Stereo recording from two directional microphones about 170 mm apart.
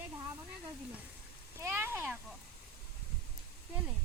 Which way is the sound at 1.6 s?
15° right (ahead or behind).